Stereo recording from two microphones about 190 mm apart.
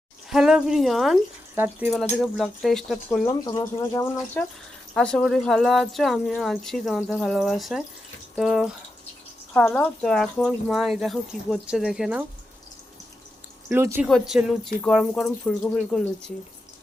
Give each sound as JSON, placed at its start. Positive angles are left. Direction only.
{"t": 0.3, "sound": "speech", "side_deg": 0}
{"t": 1.5, "sound": "speech", "side_deg": -10}
{"t": 2.2, "sound": "speech", "side_deg": 0}
{"t": 3.2, "sound": "speech", "side_deg": 20}
{"t": 4.9, "sound": "speech", "side_deg": 5}
{"t": 9.5, "sound": "speech", "side_deg": 10}
{"t": 13.7, "sound": "speech", "side_deg": -10}